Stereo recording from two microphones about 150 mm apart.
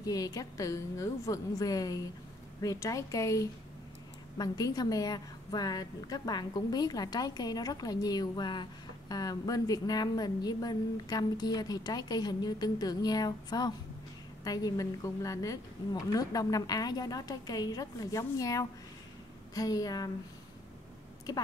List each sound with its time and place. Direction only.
0.0 s a woman's voice: 25° left (ahead or behind)